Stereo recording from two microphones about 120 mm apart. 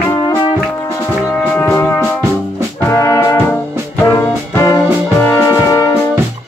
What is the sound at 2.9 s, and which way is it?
Music, 25° left (ahead or behind).